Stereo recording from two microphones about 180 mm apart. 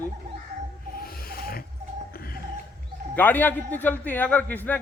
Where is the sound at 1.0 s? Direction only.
55° left (ahead or behind).